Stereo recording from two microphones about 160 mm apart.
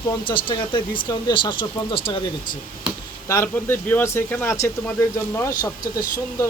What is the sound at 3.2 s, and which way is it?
Speech, 15° left (ahead or behind).